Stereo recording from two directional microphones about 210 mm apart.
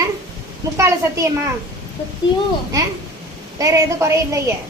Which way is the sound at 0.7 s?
15° right (ahead or behind).